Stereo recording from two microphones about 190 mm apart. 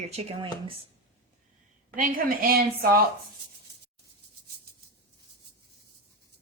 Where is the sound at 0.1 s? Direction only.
35° right (ahead or behind).